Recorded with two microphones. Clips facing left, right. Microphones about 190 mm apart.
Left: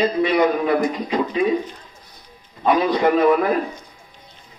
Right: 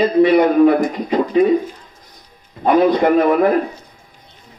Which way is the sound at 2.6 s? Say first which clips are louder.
Right 4 dB; 50° right (ahead or behind).